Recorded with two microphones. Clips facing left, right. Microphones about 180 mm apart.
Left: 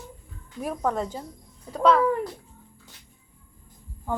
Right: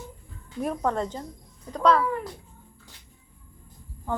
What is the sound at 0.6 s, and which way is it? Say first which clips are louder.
A woman's voice: even; 5° left (ahead or behind).